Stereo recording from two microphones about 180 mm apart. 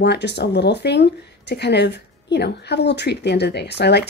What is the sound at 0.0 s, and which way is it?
Speech, 70° left (ahead or behind).